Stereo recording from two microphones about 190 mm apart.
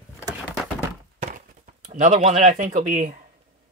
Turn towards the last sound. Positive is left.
turn(degrees=-40)  # may be behind; listen again after turning